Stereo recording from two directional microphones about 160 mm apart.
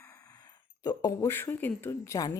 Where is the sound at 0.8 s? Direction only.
20° left (ahead or behind).